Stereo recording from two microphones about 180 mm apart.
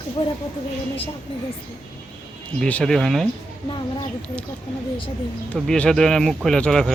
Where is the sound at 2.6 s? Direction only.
5° left (ahead or behind).